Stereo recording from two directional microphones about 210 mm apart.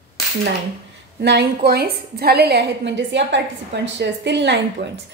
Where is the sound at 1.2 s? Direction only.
55° right (ahead or behind).